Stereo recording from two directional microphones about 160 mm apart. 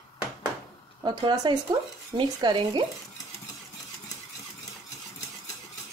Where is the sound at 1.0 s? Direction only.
25° right (ahead or behind).